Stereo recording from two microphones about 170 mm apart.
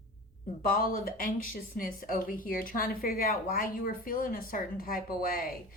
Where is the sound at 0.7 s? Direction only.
55° left (ahead or behind).